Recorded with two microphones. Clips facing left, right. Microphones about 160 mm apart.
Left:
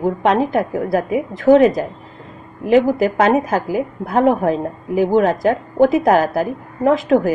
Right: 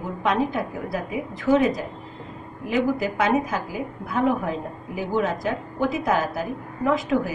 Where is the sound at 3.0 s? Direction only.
50° left (ahead or behind).